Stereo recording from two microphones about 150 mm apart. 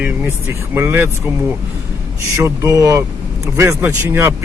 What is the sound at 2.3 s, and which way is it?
Speech, 20° right (ahead or behind).